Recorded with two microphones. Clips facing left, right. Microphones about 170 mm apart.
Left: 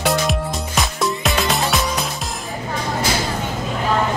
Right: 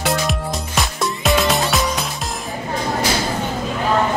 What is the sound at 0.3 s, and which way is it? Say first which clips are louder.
Music: left 1 dB; centre (ahead or behind).